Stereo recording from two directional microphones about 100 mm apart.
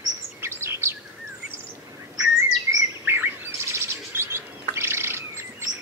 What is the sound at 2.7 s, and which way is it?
Bird vocalization, 20° right (ahead or behind).